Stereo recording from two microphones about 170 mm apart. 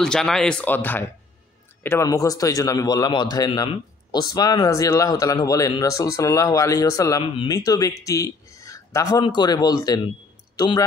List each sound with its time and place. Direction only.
0.0 s a man's voice: 5° left (ahead or behind); by 10.9 s 25° left (ahead or behind)